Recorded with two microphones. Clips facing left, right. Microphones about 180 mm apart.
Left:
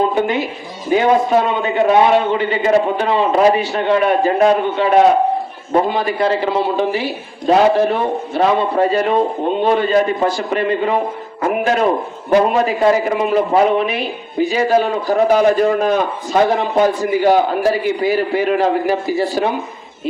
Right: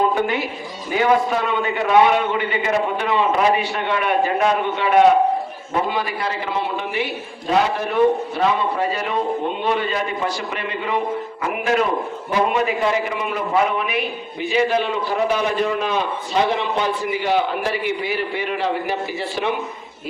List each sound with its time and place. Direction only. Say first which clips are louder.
0.1 s a man's voice: left 4 dB; 20° left (ahead or behind); by 5.0 s 35° left (ahead or behind)
5.7 s a man's voice: left 6 dB; 45° left (ahead or behind)
6.1 s a man's voice: left 8 dB; 30° left (ahead or behind)
9.6 s a man's voice: left 8 dB; 35° left (ahead or behind)